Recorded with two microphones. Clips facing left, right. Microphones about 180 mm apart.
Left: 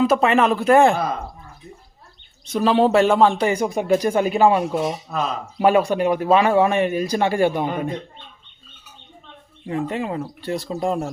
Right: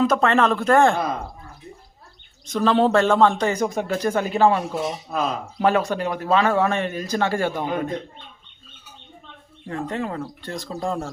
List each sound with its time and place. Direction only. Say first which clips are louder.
0.0 s speech: left 2 dB; 10° left (ahead or behind)
2.5 s speech: left 2 dB; 10° left (ahead or behind)
9.6 s speech: left 3 dB; 10° left (ahead or behind)